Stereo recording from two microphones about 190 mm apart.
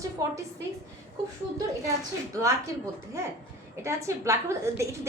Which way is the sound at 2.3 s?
15° right (ahead or behind).